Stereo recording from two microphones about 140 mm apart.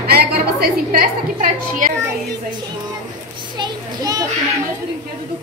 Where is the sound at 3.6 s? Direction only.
25° right (ahead or behind).